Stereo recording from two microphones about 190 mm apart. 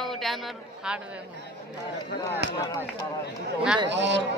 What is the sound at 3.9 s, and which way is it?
Speech, 70° right (ahead or behind).